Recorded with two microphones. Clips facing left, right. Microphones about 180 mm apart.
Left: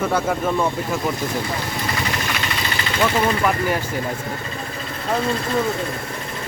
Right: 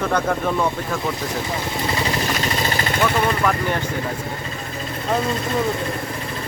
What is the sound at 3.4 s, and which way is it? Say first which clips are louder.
Speech: left 1 dB; 10° left (ahead or behind).